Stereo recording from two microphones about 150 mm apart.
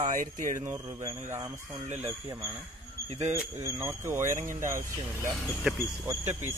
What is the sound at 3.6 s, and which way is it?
Speech, 20° right (ahead or behind).